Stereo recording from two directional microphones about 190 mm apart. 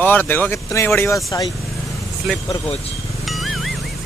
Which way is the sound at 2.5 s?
30° left (ahead or behind).